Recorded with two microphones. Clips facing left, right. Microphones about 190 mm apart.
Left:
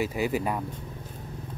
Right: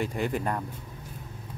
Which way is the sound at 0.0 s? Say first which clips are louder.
Left 2 dB; 5° left (ahead or behind).